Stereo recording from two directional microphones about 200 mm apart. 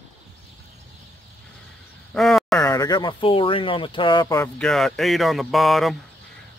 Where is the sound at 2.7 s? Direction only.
20° left (ahead or behind).